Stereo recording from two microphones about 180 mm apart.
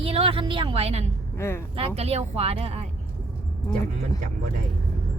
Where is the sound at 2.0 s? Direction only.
35° right (ahead or behind).